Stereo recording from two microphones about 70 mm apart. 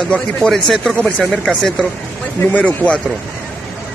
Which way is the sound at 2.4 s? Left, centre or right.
Left.